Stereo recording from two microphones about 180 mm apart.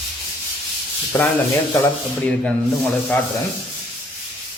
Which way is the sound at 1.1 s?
15° left (ahead or behind).